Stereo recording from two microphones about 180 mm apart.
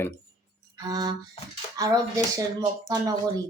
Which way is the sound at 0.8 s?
20° right (ahead or behind).